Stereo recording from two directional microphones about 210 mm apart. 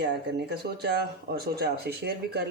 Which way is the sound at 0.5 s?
50° right (ahead or behind).